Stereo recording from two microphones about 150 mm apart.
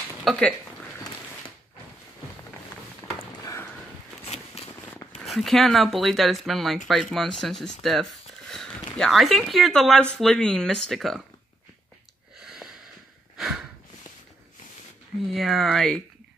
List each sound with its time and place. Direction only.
0.2 s speech: 5° left (ahead or behind)
4.6 s a sound: 45° left (ahead or behind)
5.2 s speech: centre (ahead or behind)
12.4 s a sound: 5° right (ahead or behind)
13.4 s snort: 5° right (ahead or behind)
15.2 s speech: centre (ahead or behind)